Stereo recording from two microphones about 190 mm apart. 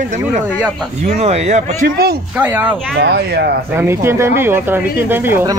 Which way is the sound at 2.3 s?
10° right (ahead or behind).